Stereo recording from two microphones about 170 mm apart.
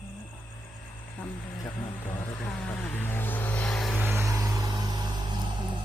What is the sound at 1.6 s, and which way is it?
Vehicle, 15° left (ahead or behind).